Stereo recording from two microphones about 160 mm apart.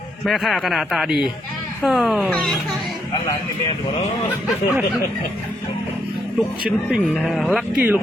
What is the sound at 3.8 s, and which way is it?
Speech, 45° left (ahead or behind).